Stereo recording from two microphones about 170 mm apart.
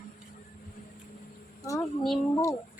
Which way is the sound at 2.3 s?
20° left (ahead or behind).